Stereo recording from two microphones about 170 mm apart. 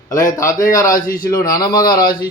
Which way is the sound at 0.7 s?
20° left (ahead or behind).